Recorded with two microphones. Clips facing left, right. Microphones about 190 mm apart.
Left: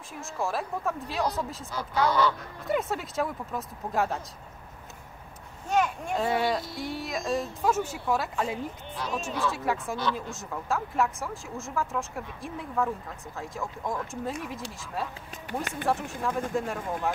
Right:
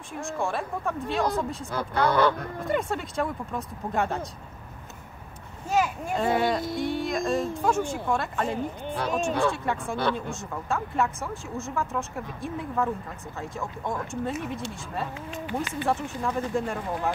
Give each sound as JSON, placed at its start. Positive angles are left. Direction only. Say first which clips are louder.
{"t": 0.2, "sound": "speech", "louder": "right 2 dB", "side_deg": 0}
{"t": 1.7, "sound": "speech", "louder": "right 1 dB", "side_deg": -55}
{"t": 2.7, "sound": "speech", "louder": "even", "side_deg": 5}
{"t": 5.7, "sound": "speech", "louder": "right 1 dB", "side_deg": -5}
{"t": 8.8, "sound": "speech", "louder": "right 7 dB", "side_deg": -55}
{"t": 9.5, "sound": "speech", "louder": "right 1 dB", "side_deg": 5}